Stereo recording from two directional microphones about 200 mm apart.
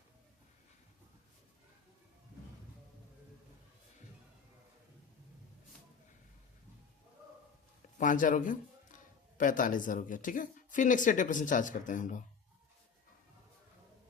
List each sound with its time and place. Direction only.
7.9 s a man's voice: 40° left (ahead or behind)